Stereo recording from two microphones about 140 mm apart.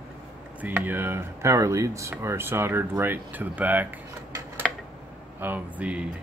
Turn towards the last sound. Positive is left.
turn(degrees=-10)  # may be behind; listen again after turning